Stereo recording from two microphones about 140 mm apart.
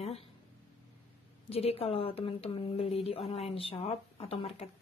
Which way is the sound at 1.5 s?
45° left (ahead or behind).